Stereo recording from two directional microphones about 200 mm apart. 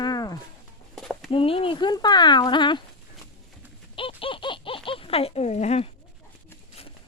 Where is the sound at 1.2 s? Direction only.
25° left (ahead or behind).